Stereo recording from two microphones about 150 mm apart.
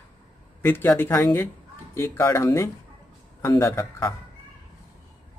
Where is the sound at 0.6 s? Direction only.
15° left (ahead or behind).